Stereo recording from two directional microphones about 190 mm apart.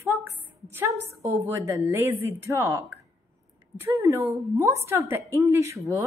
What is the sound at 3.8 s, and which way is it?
Speech, 15° right (ahead or behind).